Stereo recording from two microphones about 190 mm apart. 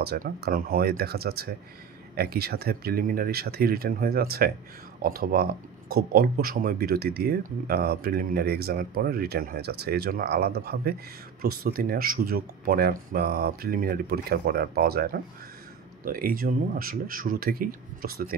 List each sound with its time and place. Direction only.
0.0 s speech: 55° right (ahead or behind)